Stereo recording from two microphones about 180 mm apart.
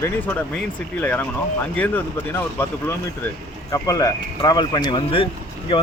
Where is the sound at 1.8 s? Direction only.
10° left (ahead or behind).